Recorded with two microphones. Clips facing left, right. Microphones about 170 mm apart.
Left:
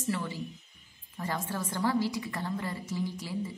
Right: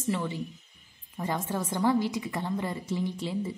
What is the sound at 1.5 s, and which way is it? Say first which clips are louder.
A woman's voice: right 5 dB; 20° right (ahead or behind).